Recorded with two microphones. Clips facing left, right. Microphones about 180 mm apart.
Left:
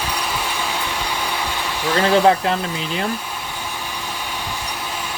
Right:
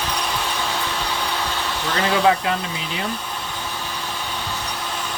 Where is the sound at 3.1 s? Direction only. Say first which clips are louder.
Even; 10° left (ahead or behind).